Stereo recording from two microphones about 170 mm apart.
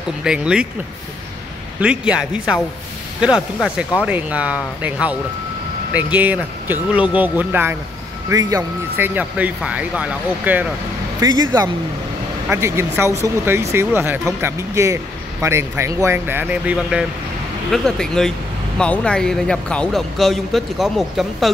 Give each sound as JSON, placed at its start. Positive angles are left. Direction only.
{"t": 0.2, "sound": "speech", "side_deg": -5}
{"t": 1.8, "sound": "speech", "side_deg": -5}
{"t": 11.1, "sound": "speech", "side_deg": -20}
{"t": 17.6, "sound": "speech", "side_deg": 5}